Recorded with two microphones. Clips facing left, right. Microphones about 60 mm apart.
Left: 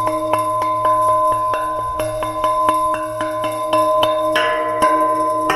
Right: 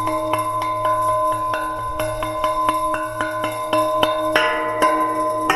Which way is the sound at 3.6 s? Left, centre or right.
Right.